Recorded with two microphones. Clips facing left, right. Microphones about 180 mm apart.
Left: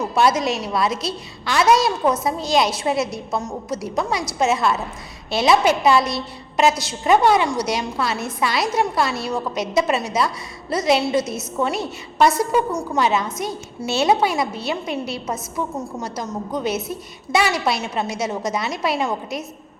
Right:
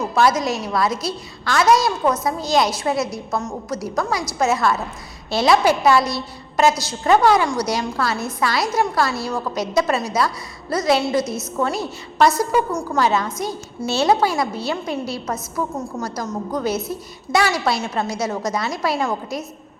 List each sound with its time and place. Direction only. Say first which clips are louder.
0.2 s a woman's voice: even; 25° left (ahead or behind)